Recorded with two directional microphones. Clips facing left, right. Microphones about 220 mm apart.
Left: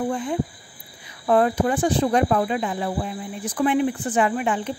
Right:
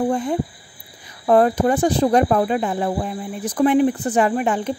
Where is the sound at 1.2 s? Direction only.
40° right (ahead or behind).